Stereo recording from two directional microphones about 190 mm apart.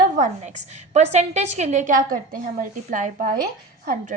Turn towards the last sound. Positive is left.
turn(degrees=-40)  # may be behind; listen again after turning